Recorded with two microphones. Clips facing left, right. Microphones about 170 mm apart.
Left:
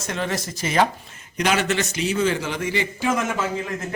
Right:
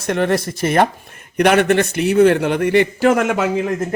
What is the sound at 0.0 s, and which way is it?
Speech, 60° right (ahead or behind).